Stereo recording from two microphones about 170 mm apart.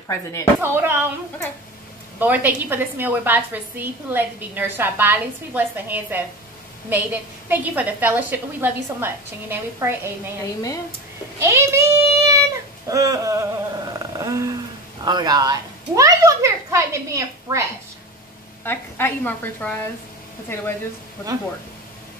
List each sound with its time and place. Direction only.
0.1 s a woman's voice: 15° left (ahead or behind)
0.6 s a woman's voice: 15° right (ahead or behind)
2.1 s a woman's voice: 10° right (ahead or behind)
10.4 s speech: 20° left (ahead or behind)
11.3 s child singing: 15° right (ahead or behind)
12.8 s a sound: 20° right (ahead or behind)
15.0 s a child's voice: 25° right (ahead or behind)
18.6 s a woman's voice: 15° left (ahead or behind)